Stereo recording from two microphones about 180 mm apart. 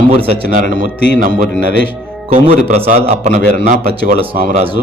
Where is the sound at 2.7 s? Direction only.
40° right (ahead or behind).